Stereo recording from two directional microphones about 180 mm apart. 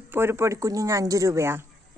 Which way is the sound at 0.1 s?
15° right (ahead or behind).